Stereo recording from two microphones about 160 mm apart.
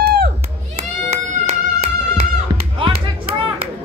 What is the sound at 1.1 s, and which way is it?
Music, 45° right (ahead or behind).